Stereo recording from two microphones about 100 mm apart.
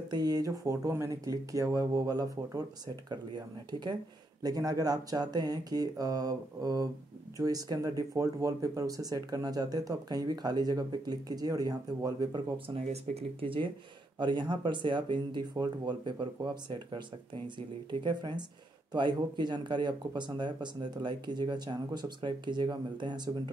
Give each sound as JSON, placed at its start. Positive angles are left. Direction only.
{"t": 0.1, "sound": "speech", "side_deg": -40}
{"t": 12.6, "sound": "speech", "side_deg": -90}
{"t": 14.2, "sound": "speech", "side_deg": -50}
{"t": 18.0, "sound": "speech", "side_deg": -50}